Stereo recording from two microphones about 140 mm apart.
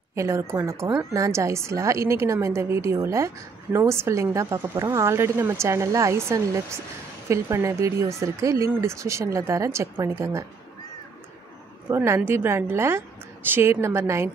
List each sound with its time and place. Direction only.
0.1 s speech: 20° right (ahead or behind)
11.9 s a woman's voice: 20° right (ahead or behind)